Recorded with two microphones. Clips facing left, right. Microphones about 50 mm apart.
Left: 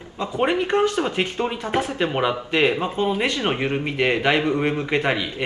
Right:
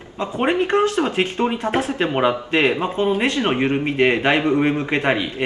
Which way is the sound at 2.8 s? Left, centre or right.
Centre.